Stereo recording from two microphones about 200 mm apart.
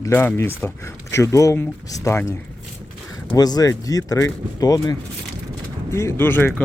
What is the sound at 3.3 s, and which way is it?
Speech, 20° left (ahead or behind).